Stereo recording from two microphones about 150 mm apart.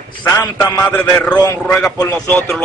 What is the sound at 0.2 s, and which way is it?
A man's voice, 20° left (ahead or behind).